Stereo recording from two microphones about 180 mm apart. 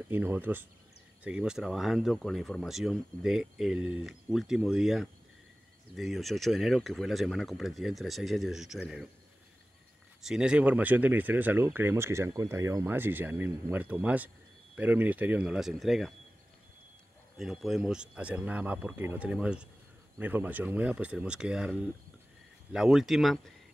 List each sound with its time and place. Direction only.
0.1 s speech: 10° right (ahead or behind)
10.2 s speech: 5° right (ahead or behind)
17.4 s speech: centre (ahead or behind)